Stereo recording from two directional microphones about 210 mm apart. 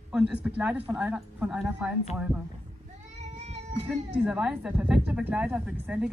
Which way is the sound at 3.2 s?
30° right (ahead or behind).